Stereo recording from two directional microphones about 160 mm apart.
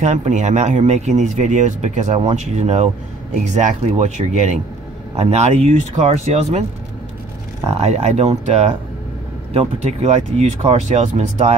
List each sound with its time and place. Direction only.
0.0 s speech: 45° right (ahead or behind)
7.6 s speech: 45° right (ahead or behind)